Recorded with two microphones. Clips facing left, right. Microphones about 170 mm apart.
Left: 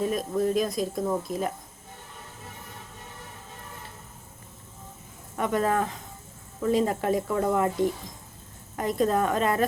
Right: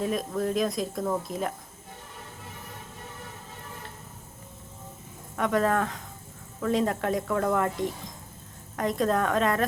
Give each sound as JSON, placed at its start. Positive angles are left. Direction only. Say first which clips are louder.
{"t": 0.0, "sound": "speech", "louder": "left 2 dB", "side_deg": 0}
{"t": 5.4, "sound": "speech", "louder": "even", "side_deg": 0}